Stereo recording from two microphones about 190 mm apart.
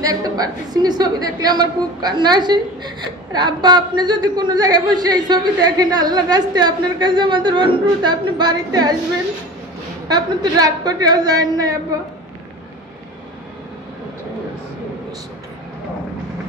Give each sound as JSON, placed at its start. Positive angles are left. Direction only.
{"t": 0.0, "sound": "a woman's voice", "side_deg": -20}
{"t": 10.0, "sound": "a woman's voice", "side_deg": -20}